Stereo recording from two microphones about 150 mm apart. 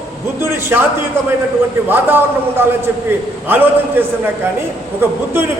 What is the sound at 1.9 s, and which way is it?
Speech, 15° right (ahead or behind).